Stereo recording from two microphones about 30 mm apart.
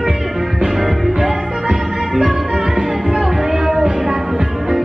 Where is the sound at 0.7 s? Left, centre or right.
Centre.